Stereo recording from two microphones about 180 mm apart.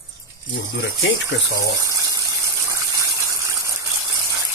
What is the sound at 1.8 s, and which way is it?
Water, 20° right (ahead or behind).